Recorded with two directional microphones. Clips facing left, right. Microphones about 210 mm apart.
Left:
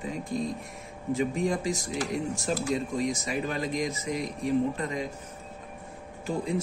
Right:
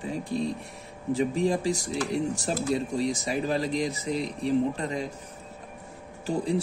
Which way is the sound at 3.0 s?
30° right (ahead or behind).